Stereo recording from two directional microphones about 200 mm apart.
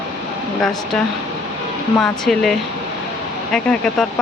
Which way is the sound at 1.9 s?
Centre (ahead or behind).